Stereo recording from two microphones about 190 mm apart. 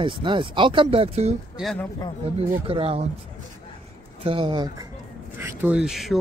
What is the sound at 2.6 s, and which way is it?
Speech, 30° right (ahead or behind).